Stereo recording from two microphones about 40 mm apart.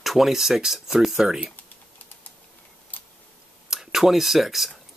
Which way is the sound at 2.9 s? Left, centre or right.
Left.